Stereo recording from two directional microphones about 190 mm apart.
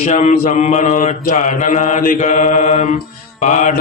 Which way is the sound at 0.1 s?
40° left (ahead or behind).